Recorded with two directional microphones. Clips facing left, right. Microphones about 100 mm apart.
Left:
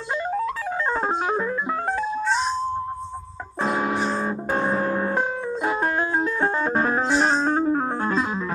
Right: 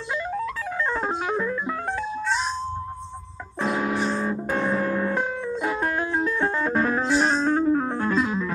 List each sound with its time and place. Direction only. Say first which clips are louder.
0.3 s music: left 3 dB; 30° left (ahead or behind)
3.6 s music: left 1 dB; 30° left (ahead or behind)